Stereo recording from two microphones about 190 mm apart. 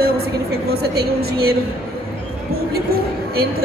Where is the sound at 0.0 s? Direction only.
55° right (ahead or behind).